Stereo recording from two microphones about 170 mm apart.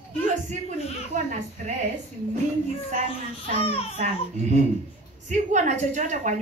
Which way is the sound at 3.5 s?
35° left (ahead or behind).